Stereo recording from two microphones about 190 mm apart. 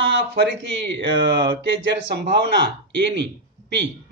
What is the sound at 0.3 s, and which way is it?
Speech, 65° right (ahead or behind).